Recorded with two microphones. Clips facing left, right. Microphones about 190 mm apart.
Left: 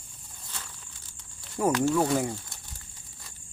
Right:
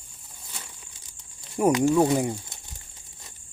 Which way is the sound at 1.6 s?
15° right (ahead or behind).